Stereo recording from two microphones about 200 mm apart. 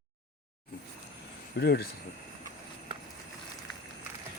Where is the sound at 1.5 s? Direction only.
55° left (ahead or behind).